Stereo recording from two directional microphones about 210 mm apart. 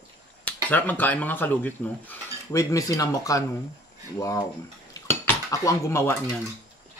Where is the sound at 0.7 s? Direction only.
10° left (ahead or behind).